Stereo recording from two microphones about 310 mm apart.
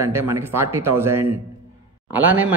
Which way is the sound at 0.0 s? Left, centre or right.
Centre.